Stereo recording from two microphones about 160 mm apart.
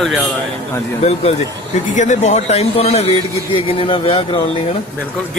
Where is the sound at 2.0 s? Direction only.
50° left (ahead or behind).